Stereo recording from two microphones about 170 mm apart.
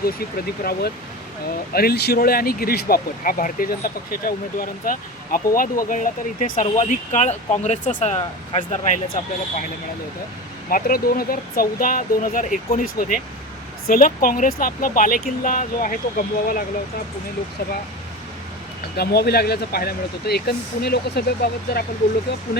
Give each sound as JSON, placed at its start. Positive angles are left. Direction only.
{"t": 0.6, "sound": "speech", "side_deg": 65}
{"t": 10.7, "sound": "speech", "side_deg": 60}
{"t": 18.9, "sound": "speech", "side_deg": 65}